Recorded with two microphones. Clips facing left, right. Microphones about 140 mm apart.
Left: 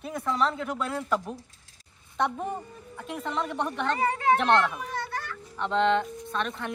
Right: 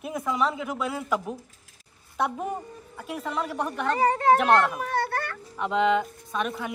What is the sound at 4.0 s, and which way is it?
Speech, 35° right (ahead or behind).